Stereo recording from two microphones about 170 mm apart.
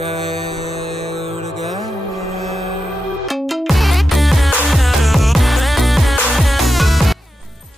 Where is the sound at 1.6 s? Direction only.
Centre (ahead or behind).